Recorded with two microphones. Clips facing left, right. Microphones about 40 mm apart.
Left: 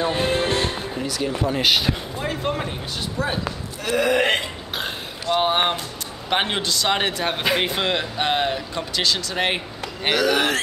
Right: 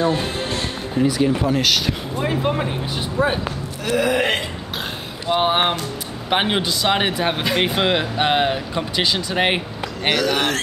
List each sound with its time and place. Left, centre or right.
0.1 s music: left
0.9 s speech: centre
1.5 s speech: centre
2.1 s speech: centre
3.8 s burping: centre
5.2 s speech: centre
10.0 s burping: centre